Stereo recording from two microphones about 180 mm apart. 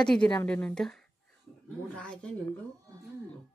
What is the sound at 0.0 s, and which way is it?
Speech, 5° left (ahead or behind).